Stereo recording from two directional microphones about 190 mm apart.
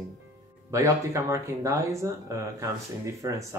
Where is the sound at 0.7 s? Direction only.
15° right (ahead or behind).